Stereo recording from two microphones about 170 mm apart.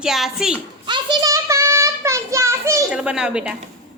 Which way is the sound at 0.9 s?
25° right (ahead or behind).